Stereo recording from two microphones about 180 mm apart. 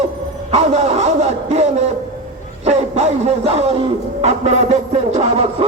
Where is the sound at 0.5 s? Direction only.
40° right (ahead or behind).